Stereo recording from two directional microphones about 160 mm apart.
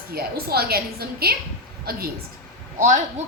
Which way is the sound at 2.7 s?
50° right (ahead or behind).